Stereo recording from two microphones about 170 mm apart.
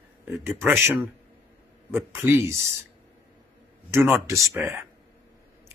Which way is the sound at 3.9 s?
15° right (ahead or behind).